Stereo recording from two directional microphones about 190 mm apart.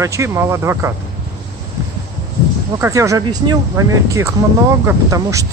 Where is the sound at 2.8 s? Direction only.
15° right (ahead or behind).